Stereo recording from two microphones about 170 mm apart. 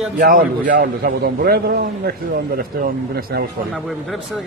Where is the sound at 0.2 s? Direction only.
55° right (ahead or behind).